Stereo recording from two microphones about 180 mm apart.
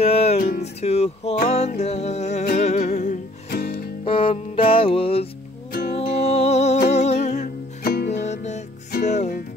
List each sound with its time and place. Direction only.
0.0 s music: 35° left (ahead or behind); by 3.8 s 55° left (ahead or behind)
4.0 s music: 30° left (ahead or behind)
5.7 s music: 55° left (ahead or behind)
5.9 s music: 35° left (ahead or behind); by 8.1 s 55° left (ahead or behind)
8.1 s music: 40° left (ahead or behind)